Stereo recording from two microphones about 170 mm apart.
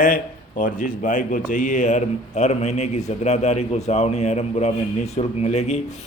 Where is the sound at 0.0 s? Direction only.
50° left (ahead or behind).